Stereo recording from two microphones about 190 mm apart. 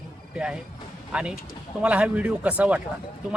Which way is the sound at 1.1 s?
5° right (ahead or behind).